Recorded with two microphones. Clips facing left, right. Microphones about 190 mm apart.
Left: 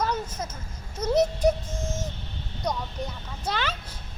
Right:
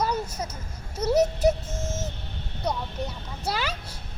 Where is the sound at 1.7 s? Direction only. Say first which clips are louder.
Even; 10° left (ahead or behind).